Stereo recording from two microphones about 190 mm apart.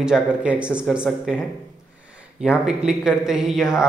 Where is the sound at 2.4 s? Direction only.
5° right (ahead or behind).